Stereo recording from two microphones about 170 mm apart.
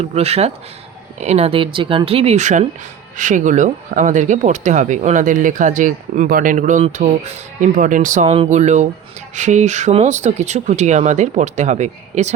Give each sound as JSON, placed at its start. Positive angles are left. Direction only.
{"t": 0.0, "sound": "speech", "side_deg": -40}